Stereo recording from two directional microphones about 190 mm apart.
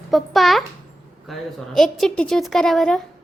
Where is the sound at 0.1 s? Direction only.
Centre (ahead or behind).